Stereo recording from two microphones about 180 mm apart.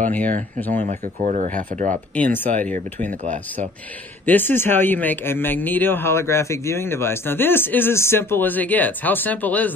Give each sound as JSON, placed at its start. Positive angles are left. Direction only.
{"t": 0.1, "sound": "speech", "side_deg": 10}
{"t": 0.7, "sound": "speech", "side_deg": -45}
{"t": 2.1, "sound": "speech", "side_deg": 10}
{"t": 4.3, "sound": "speech", "side_deg": 10}